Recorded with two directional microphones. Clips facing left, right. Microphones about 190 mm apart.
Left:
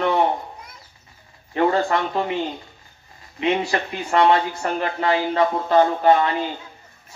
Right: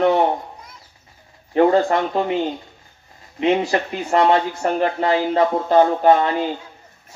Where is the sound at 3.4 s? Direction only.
40° right (ahead or behind).